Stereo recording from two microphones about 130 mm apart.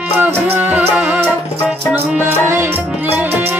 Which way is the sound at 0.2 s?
15° right (ahead or behind).